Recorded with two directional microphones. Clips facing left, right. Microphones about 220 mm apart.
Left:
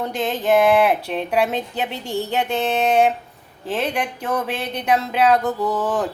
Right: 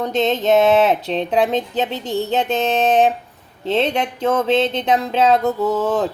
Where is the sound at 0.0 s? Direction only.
20° right (ahead or behind).